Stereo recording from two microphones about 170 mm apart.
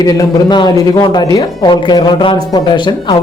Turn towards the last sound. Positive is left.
turn(degrees=25)  # may be behind; listen again after turning